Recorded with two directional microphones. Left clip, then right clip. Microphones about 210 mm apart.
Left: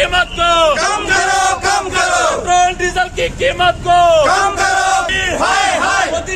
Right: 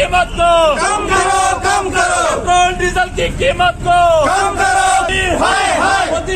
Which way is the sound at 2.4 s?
45° left (ahead or behind).